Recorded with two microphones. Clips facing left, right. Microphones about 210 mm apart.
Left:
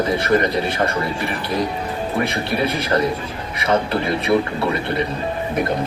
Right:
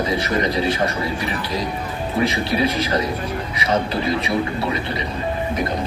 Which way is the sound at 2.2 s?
60° left (ahead or behind).